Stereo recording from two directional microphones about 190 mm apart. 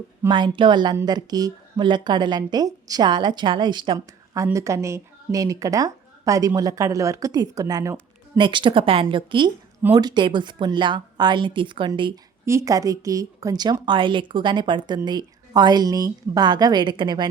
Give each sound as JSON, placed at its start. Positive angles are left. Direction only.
{"t": 0.3, "sound": "a woman's voice", "side_deg": -25}